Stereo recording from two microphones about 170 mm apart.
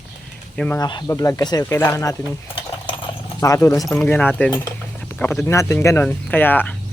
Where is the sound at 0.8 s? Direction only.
25° left (ahead or behind).